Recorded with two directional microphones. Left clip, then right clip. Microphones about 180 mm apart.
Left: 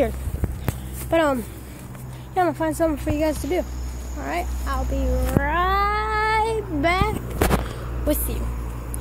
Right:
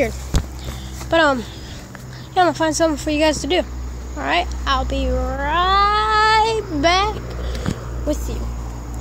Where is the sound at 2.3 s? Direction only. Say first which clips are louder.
Right 5 dB; 5° right (ahead or behind).